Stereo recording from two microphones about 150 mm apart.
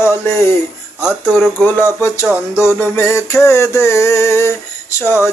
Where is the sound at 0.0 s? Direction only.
15° left (ahead or behind).